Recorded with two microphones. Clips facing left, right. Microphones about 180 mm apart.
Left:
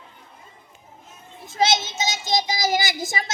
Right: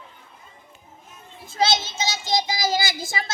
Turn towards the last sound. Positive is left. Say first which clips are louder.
# left 1 dB
turn(degrees=20)  # may be behind; listen again after turning